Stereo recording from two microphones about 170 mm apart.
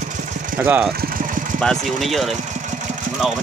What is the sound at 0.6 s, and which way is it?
Speech, 10° right (ahead or behind).